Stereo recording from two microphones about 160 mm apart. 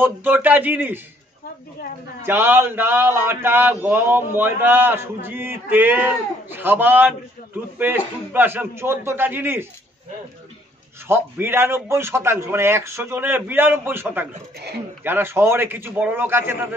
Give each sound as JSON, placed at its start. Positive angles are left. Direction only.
{"t": 0.0, "sound": "speech", "side_deg": -15}
{"t": 2.2, "sound": "speech", "side_deg": -15}
{"t": 11.1, "sound": "speech", "side_deg": -15}